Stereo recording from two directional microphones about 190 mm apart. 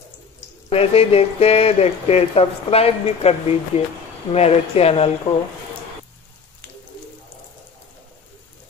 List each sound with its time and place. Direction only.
0.7 s speech: 30° left (ahead or behind)